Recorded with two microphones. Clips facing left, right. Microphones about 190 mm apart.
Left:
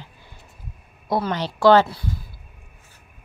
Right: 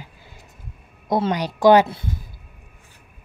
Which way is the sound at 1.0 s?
20° right (ahead or behind).